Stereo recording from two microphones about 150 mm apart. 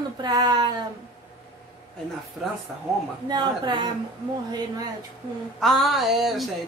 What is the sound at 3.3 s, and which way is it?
Speech, 30° right (ahead or behind).